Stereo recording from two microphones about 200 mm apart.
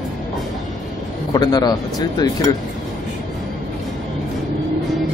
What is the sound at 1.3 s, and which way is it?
Speech, 20° left (ahead or behind).